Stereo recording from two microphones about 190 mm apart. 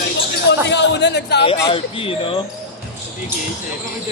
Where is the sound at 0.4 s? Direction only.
65° left (ahead or behind).